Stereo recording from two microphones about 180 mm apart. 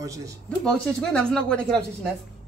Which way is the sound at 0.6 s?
5° left (ahead or behind).